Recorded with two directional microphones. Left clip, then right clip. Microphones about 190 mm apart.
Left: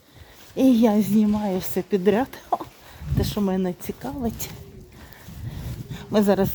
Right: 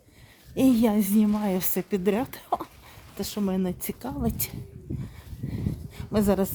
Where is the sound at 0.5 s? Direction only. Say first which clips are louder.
Left 4 dB; 10° right (ahead or behind).